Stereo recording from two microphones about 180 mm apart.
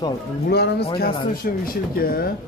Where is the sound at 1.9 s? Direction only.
55° left (ahead or behind).